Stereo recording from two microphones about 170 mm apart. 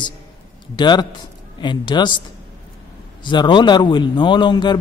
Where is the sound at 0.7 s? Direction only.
25° left (ahead or behind).